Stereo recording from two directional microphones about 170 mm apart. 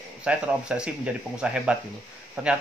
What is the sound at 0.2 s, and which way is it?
Speech, 5° right (ahead or behind).